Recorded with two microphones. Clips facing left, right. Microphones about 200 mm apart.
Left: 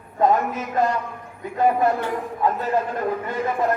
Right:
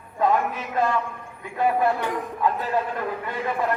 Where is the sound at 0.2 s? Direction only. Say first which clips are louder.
Left 3 dB; 40° left (ahead or behind).